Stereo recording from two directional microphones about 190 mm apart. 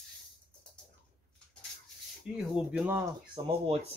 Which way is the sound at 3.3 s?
30° right (ahead or behind).